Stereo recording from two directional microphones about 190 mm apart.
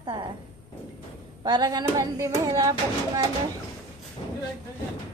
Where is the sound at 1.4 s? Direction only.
20° right (ahead or behind).